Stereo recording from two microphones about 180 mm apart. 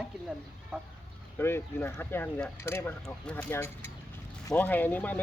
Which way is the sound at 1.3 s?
10° left (ahead or behind).